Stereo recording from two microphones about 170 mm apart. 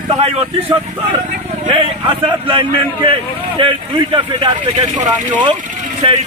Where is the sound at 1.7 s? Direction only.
30° right (ahead or behind).